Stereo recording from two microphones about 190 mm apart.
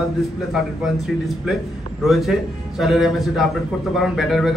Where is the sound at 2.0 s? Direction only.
Centre (ahead or behind).